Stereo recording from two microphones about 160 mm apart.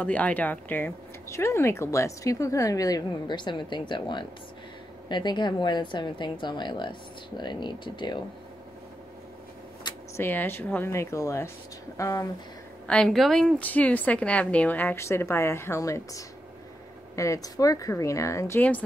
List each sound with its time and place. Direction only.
0.0 s speech: 10° left (ahead or behind); by 8.2 s 30° left (ahead or behind)
10.1 s a woman's voice: 15° left (ahead or behind)
12.8 s a woman's voice: 5° left (ahead or behind)